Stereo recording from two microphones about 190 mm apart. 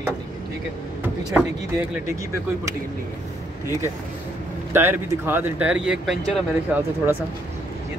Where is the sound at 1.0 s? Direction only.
10° right (ahead or behind).